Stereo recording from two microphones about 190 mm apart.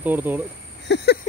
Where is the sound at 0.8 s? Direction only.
60° left (ahead or behind).